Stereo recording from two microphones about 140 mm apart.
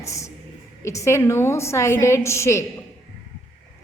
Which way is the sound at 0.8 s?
20° left (ahead or behind).